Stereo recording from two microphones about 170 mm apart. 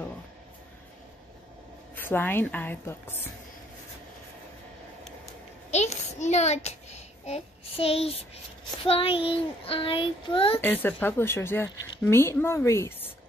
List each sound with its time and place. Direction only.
2.0 s speech: 10° left (ahead or behind)
5.7 s a sound: 40° left (ahead or behind)
8.8 s child singing: 35° left (ahead or behind)
10.6 s speech: 10° left (ahead or behind)